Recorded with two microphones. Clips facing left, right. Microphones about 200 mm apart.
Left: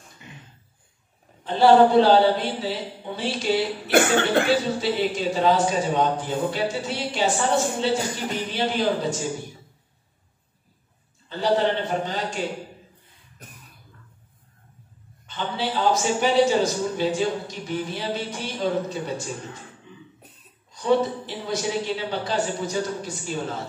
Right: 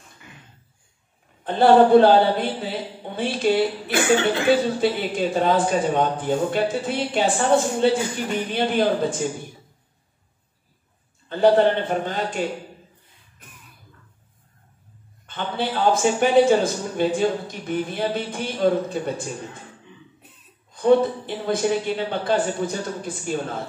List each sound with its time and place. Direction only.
1.4 s a man's voice: 55° right (ahead or behind)
3.9 s speech: 55° left (ahead or behind)
4.5 s a man's voice: 55° right (ahead or behind)
11.2 s a man's voice: 55° right (ahead or behind)
15.2 s a man's voice: 55° right (ahead or behind)
20.7 s a man's voice: 55° right (ahead or behind)